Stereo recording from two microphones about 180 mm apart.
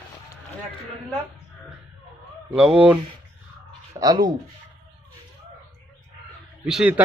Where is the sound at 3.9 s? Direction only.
20° right (ahead or behind).